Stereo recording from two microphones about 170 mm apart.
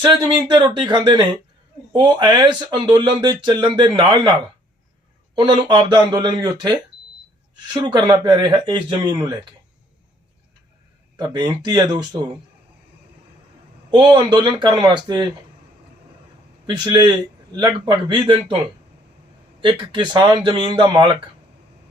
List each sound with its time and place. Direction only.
0.0 s a man's voice: 25° right (ahead or behind)
11.2 s a man's voice: 25° right (ahead or behind)
13.9 s a man's voice: 25° right (ahead or behind)
16.6 s a man's voice: 25° right (ahead or behind)
19.6 s a man's voice: 25° right (ahead or behind)